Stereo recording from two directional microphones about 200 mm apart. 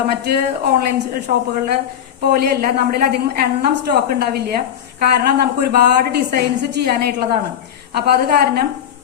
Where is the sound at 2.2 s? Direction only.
50° right (ahead or behind).